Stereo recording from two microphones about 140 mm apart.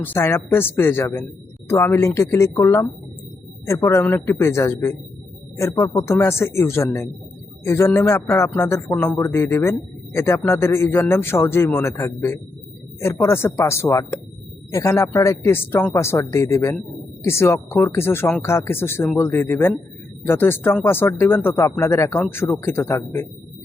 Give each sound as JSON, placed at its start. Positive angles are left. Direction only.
{"t": 0.0, "sound": "a man's voice", "side_deg": 15}
{"t": 3.8, "sound": "a man's voice", "side_deg": 15}